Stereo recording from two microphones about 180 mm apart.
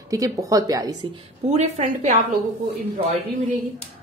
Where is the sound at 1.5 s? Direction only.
40° right (ahead or behind).